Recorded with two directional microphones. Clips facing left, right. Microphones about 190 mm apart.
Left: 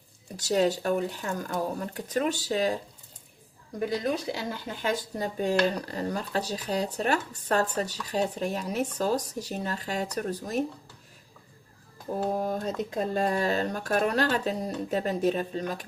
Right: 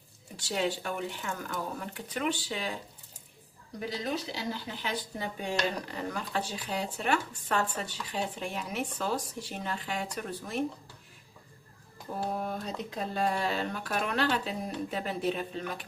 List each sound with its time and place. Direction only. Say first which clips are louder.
0.4 s speech: left 7 dB; 40° left (ahead or behind)
3.8 s speech: left 6 dB; 50° left (ahead or behind)
12.4 s speech: left 6 dB; 45° left (ahead or behind)